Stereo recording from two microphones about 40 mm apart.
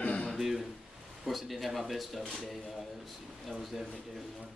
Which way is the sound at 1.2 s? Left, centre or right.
Centre.